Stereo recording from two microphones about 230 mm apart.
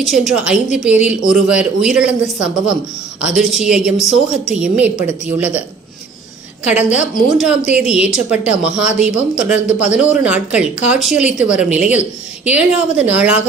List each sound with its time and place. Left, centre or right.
0.0 s a woman's voice: centre
5.0 s a woman's voice: left
6.9 s a woman's voice: centre